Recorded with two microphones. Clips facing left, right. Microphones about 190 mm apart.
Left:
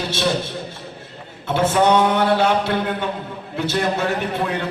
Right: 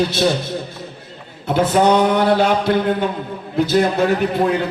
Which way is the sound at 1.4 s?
40° right (ahead or behind).